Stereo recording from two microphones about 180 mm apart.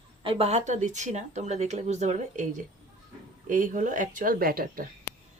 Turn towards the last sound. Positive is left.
turn(degrees=-55)  # may be behind; listen again after turning